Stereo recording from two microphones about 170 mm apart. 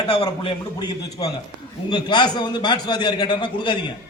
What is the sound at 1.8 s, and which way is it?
A man's voice, 25° left (ahead or behind).